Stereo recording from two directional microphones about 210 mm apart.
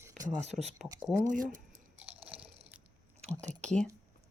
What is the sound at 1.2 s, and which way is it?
Speech, 40° right (ahead or behind).